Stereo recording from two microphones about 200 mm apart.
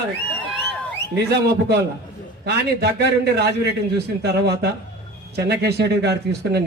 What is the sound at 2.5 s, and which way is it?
Speech, 55° right (ahead or behind).